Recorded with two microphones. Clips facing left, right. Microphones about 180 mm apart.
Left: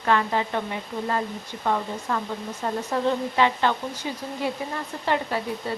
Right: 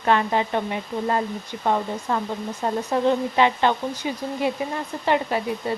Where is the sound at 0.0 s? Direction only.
20° right (ahead or behind).